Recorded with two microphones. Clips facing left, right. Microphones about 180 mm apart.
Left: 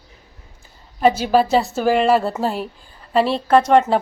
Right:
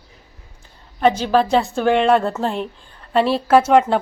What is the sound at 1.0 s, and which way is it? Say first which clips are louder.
Speech: left 1 dB; 10° left (ahead or behind).